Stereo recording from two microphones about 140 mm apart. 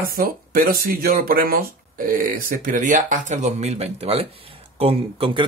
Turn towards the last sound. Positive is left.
turn(degrees=-40)  # may be behind; listen again after turning